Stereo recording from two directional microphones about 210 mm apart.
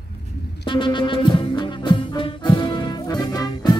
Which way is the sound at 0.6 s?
20° left (ahead or behind).